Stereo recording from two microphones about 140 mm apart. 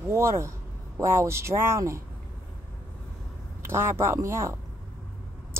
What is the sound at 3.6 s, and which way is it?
Speech, 15° right (ahead or behind).